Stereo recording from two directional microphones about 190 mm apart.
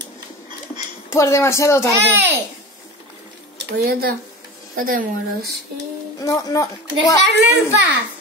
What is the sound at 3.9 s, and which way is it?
A woman's voice, 50° right (ahead or behind).